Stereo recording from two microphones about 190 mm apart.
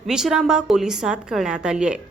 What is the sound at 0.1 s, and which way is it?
A woman's voice, 5° right (ahead or behind).